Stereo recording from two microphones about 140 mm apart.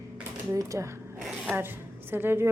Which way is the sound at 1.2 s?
5° right (ahead or behind).